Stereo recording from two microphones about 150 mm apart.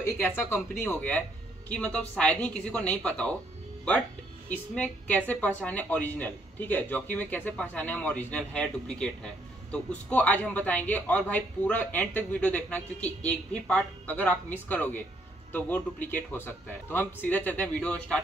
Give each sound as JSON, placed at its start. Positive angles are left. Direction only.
{"t": 0.0, "sound": "a woman's voice", "side_deg": 15}
{"t": 4.5, "sound": "a woman's voice", "side_deg": 10}